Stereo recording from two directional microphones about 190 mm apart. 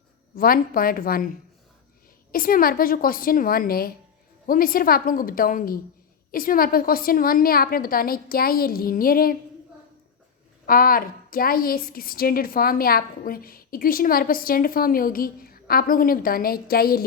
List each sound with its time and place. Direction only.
0.3 s a woman's voice: 50° left (ahead or behind)
2.3 s a woman's voice: 50° left (ahead or behind)
10.7 s a woman's voice: 50° left (ahead or behind)